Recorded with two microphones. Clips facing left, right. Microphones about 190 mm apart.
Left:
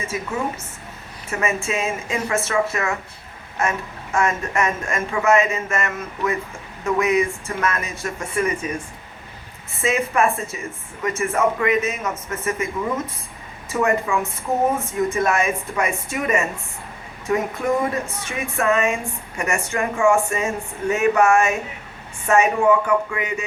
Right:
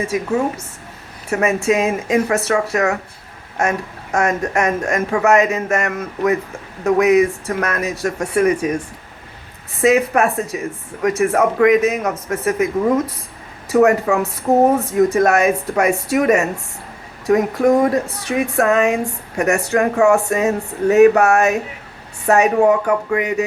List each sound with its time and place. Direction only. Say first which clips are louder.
0.0 s speech: right 7 dB; 70° right (ahead or behind)
4.2 s speech: right 4 dB; 65° right (ahead or behind)
9.8 s speech: right 6 dB; 70° right (ahead or behind)
13.7 s speech: right 7 dB; 70° right (ahead or behind)
17.3 s speech: right 7 dB; 40° right (ahead or behind)
17.8 s speech: right 7 dB; 70° right (ahead or behind)